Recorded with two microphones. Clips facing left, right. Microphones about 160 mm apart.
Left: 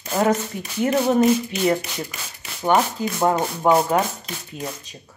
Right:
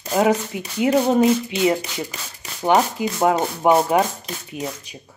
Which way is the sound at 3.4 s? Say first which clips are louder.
Right 1 dB; 25° right (ahead or behind).